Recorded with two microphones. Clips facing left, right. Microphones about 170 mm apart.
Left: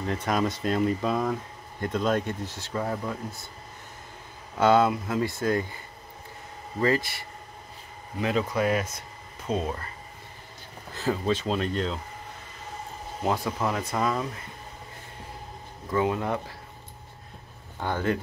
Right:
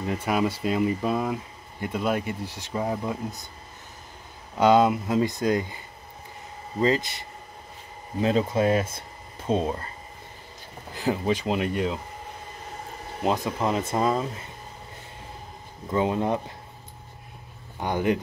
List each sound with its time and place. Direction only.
0.0 s speech: 10° right (ahead or behind)
4.6 s speech: 15° right (ahead or behind)
6.8 s speech: 20° right (ahead or behind)
10.9 s speech: 15° right (ahead or behind)
13.2 s speech: 20° right (ahead or behind)
15.9 s speech: 25° right (ahead or behind)
17.7 s speech: 15° right (ahead or behind)